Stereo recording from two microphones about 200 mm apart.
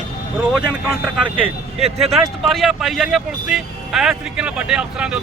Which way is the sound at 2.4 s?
Centre (ahead or behind).